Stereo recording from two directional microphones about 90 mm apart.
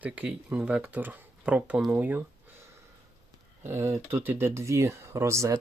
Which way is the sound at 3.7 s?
30° right (ahead or behind).